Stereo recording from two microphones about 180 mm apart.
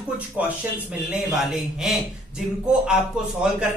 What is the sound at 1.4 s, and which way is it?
Speech, centre (ahead or behind).